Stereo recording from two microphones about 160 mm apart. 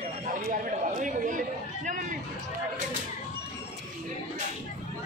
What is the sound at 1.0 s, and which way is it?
Chatter, 55° right (ahead or behind).